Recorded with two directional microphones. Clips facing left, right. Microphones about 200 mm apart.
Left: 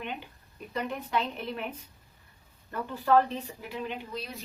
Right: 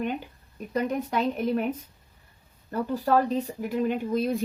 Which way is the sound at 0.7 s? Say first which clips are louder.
Right 5 dB; 40° right (ahead or behind).